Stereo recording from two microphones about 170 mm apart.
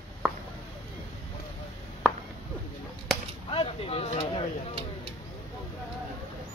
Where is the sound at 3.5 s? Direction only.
30° left (ahead or behind).